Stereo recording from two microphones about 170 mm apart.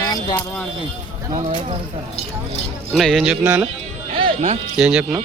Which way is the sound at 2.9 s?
Centre (ahead or behind).